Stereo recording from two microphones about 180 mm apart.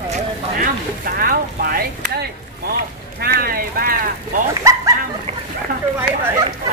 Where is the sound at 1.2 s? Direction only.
55° right (ahead or behind).